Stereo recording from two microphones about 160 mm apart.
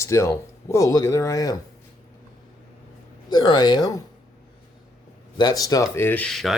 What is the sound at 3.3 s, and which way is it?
Speech, 25° left (ahead or behind).